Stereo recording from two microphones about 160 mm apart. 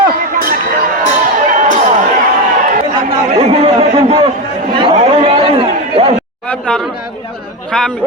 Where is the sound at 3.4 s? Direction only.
40° right (ahead or behind).